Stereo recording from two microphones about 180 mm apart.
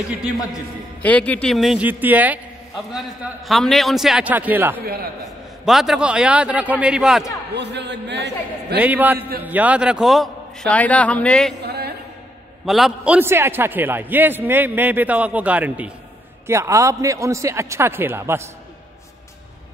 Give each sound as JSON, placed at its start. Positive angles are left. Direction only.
{"t": 1.0, "sound": "a man's voice", "side_deg": 10}
{"t": 7.5, "sound": "a man's voice", "side_deg": -70}
{"t": 8.8, "sound": "a man's voice", "side_deg": -10}
{"t": 11.6, "sound": "a sound", "side_deg": -65}
{"t": 12.6, "sound": "a man's voice", "side_deg": 0}